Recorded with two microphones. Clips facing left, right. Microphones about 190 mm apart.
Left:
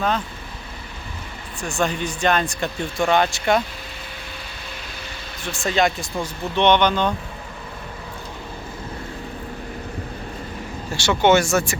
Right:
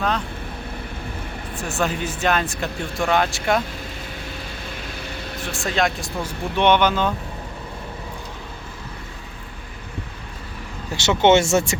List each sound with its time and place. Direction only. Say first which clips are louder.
1.6 s speech: left 1 dB; 5° right (ahead or behind)
5.4 s speech: left 2 dB; centre (ahead or behind)
10.9 s speech: right 1 dB; 20° right (ahead or behind)